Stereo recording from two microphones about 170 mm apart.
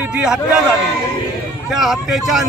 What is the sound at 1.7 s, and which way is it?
Speech, centre (ahead or behind).